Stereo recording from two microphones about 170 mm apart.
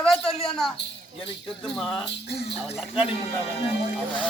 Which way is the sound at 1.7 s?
Centre (ahead or behind).